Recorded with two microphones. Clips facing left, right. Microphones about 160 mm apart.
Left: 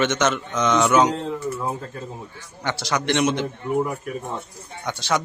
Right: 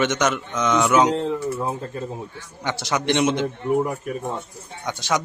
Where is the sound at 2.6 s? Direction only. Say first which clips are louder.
Right 1 dB; 20° right (ahead or behind).